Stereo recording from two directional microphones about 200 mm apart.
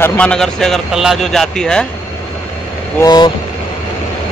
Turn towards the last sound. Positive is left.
turn(degrees=20)  # may be behind; listen again after turning